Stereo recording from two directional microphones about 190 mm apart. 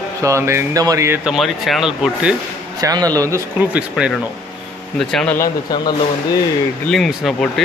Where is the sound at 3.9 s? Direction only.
Centre (ahead or behind).